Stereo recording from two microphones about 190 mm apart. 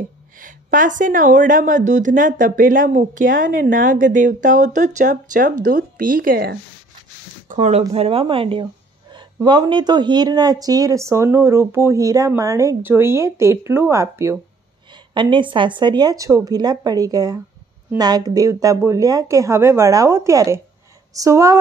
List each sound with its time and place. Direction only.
0.4 s a woman's voice: 45° right (ahead or behind)
7.4 s speech: 40° right (ahead or behind); by 14.4 s 15° right (ahead or behind)
15.1 s speech: 25° right (ahead or behind)